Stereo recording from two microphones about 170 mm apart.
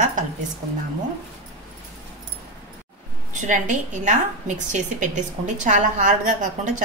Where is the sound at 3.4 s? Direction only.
45° right (ahead or behind).